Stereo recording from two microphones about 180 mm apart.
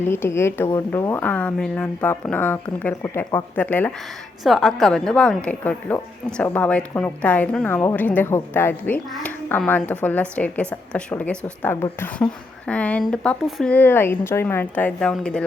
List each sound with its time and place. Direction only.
0.0 s a woman's voice: 10° left (ahead or behind)
9.0 s speech: centre (ahead or behind)
9.5 s a woman's voice: 10° left (ahead or behind)